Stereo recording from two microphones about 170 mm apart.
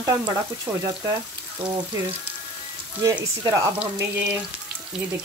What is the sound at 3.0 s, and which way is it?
Speech, 20° right (ahead or behind).